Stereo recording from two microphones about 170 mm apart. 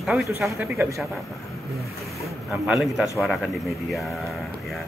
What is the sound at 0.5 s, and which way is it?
Speech, 10° right (ahead or behind).